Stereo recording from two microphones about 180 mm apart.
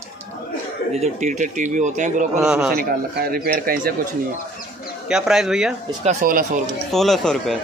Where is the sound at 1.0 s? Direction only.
40° right (ahead or behind).